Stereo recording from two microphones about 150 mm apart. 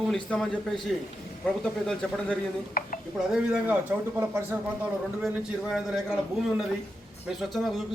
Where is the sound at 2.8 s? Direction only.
75° left (ahead or behind).